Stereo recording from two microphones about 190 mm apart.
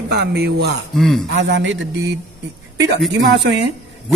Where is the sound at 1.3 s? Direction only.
65° right (ahead or behind).